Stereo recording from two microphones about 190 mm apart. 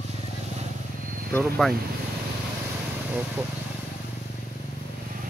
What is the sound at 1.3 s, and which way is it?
Speech, centre (ahead or behind).